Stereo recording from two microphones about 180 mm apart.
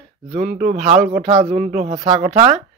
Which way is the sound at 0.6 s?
40° right (ahead or behind).